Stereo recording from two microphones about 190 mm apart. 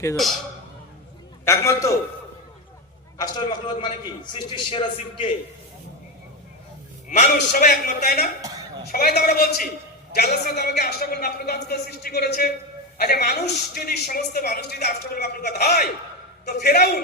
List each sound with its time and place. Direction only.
1.5 s a man's voice: 15° left (ahead or behind)
3.2 s a man's voice: 25° left (ahead or behind)
7.3 s speech: 50° left (ahead or behind)
8.4 s a sound: 15° right (ahead or behind)
8.9 s a man's voice: 55° left (ahead or behind)